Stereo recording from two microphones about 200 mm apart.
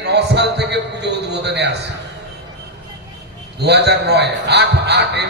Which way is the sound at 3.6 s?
55° right (ahead or behind).